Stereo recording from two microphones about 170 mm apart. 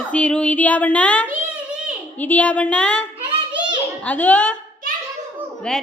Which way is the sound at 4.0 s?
10° left (ahead or behind).